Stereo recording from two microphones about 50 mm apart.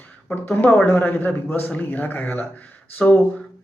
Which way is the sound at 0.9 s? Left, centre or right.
Left.